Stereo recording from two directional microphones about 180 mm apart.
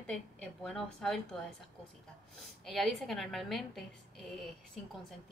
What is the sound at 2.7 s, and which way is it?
A woman's voice, centre (ahead or behind).